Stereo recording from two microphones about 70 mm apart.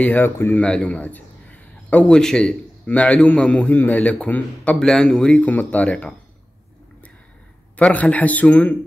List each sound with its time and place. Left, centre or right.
0.0 s a man's voice: left
5.4 s a man's voice: left
7.7 s a man's voice: centre